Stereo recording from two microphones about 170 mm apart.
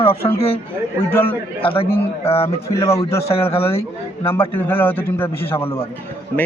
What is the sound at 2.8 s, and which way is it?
Speech, 20° left (ahead or behind).